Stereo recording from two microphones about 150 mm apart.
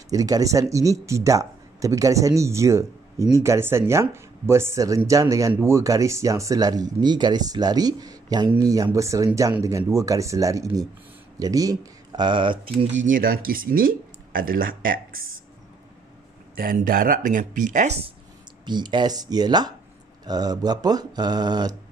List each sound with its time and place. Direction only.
0.1 s speech: 25° right (ahead or behind)
13.0 s speech: 70° right (ahead or behind)
16.5 s speech: 75° right (ahead or behind); by 18.1 s 45° right (ahead or behind)
18.7 s speech: 30° right (ahead or behind)